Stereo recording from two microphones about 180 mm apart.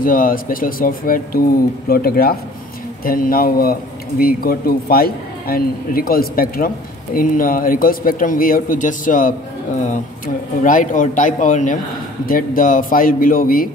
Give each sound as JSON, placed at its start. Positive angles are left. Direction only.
{"t": 0.0, "sound": "a man's voice", "side_deg": 50}